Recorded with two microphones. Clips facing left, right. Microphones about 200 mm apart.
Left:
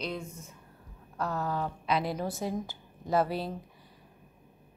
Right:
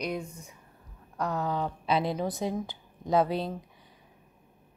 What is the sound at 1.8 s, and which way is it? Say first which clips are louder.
Speech: right 3 dB; 30° right (ahead or behind).